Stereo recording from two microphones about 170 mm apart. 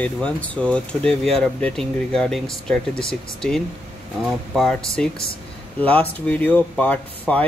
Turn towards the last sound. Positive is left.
turn(degrees=5)  # may be behind; listen again after turning